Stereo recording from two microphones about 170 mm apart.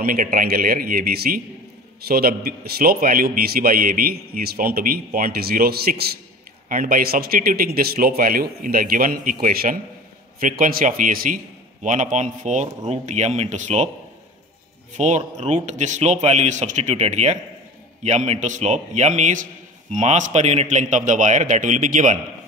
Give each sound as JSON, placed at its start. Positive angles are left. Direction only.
{"t": 0.0, "sound": "a man's voice", "side_deg": -55}
{"t": 15.0, "sound": "a man's voice", "side_deg": -45}